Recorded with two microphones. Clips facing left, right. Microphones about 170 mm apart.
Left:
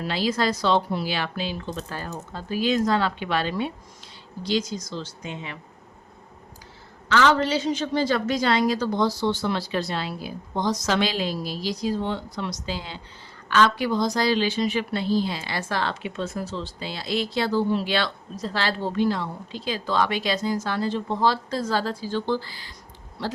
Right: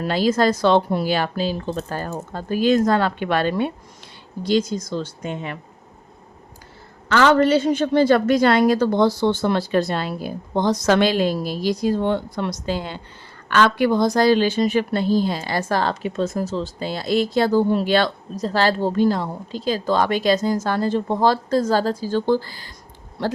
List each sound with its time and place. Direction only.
0.0 s a woman's voice: 50° right (ahead or behind)
7.1 s a woman's voice: 50° right (ahead or behind)